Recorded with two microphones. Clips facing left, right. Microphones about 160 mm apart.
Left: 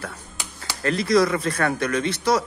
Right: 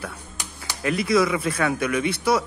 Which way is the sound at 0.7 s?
10° right (ahead or behind).